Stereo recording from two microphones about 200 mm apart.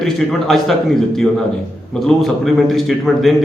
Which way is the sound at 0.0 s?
Centre (ahead or behind).